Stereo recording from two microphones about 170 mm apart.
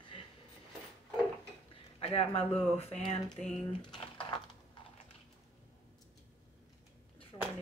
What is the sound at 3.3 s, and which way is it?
Typing, 5° left (ahead or behind).